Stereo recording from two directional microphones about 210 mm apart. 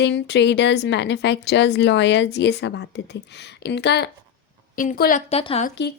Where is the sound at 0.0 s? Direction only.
55° left (ahead or behind).